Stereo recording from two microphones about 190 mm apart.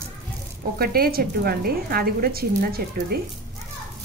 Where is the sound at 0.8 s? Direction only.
50° right (ahead or behind).